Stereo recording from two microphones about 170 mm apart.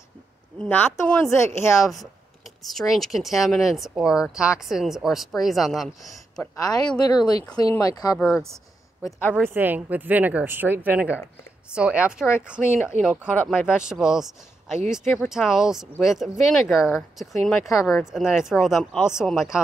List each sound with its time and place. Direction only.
0.6 s speech: 10° left (ahead or behind)
2.6 s speech: centre (ahead or behind)
6.3 s speech: 15° left (ahead or behind)
8.2 s speech: centre (ahead or behind)
9.5 s a woman's voice: 10° right (ahead or behind)